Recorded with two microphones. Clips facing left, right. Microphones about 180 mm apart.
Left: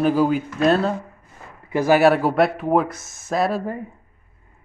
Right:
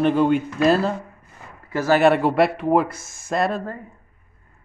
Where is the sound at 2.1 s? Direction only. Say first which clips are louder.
Even; centre (ahead or behind).